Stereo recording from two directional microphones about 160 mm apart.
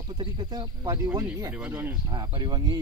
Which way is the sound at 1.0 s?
15° right (ahead or behind).